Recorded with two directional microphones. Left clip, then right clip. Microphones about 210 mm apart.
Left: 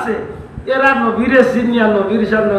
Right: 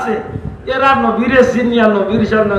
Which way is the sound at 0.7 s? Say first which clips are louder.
Right 1 dB; 50° right (ahead or behind).